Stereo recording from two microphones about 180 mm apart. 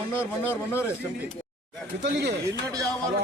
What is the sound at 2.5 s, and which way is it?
Speech, 20° right (ahead or behind).